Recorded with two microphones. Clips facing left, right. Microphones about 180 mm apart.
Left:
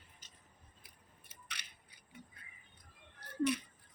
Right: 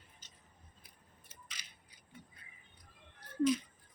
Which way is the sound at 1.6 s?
65° left (ahead or behind).